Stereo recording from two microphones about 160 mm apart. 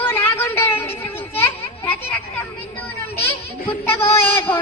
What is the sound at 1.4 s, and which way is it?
Children playing, 15° left (ahead or behind).